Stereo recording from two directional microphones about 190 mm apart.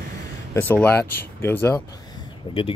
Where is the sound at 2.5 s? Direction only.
25° left (ahead or behind).